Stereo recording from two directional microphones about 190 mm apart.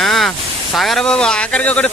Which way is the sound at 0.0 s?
Centre (ahead or behind).